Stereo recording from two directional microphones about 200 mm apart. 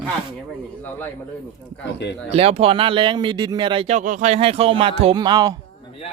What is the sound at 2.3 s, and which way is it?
Speech, 30° right (ahead or behind).